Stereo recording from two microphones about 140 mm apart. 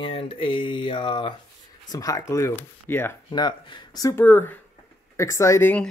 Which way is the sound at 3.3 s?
35° left (ahead or behind).